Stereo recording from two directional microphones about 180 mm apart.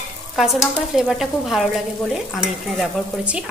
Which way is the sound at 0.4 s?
Centre (ahead or behind).